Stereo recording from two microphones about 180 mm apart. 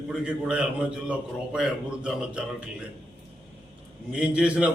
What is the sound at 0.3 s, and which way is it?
A man's voice, 5° right (ahead or behind).